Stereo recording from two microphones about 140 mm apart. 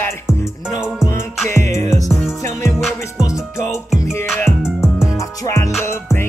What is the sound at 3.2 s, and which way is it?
Music, 25° left (ahead or behind).